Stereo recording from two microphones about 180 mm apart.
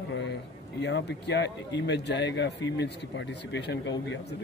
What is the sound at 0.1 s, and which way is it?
Speech, 75° left (ahead or behind).